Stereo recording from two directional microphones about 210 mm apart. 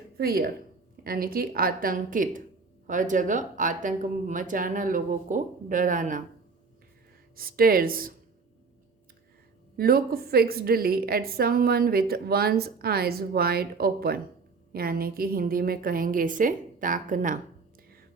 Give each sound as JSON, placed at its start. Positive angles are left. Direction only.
{"t": 0.2, "sound": "a woman's voice", "side_deg": -45}
{"t": 7.3, "sound": "a woman's voice", "side_deg": -45}
{"t": 9.7, "sound": "a woman's voice", "side_deg": -45}